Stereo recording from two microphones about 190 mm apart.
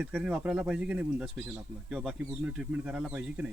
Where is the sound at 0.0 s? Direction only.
5° right (ahead or behind).